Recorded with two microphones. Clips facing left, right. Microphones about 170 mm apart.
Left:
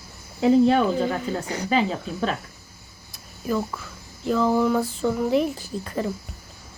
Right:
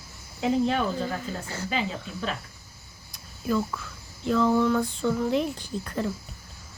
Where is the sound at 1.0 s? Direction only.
90° left.